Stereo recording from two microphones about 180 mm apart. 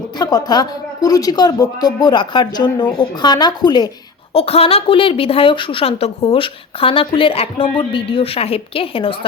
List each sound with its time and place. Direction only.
0.2 s speech: 20° left (ahead or behind)